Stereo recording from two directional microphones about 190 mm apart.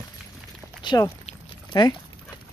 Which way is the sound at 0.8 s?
20° left (ahead or behind).